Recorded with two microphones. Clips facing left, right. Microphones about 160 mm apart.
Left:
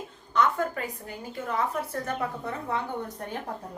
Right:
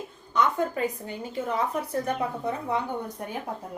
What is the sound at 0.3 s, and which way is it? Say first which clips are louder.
A woman's voice: right 1 dB; 20° right (ahead or behind).